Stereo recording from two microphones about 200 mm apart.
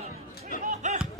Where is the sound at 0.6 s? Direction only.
35° right (ahead or behind).